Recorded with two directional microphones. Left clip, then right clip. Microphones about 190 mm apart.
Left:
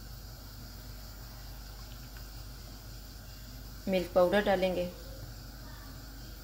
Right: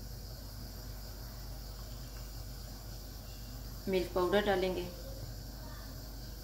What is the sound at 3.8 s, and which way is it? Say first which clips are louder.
Speech: left 5 dB; 40° left (ahead or behind).